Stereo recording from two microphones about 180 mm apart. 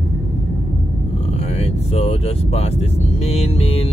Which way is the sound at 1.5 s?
35° left (ahead or behind).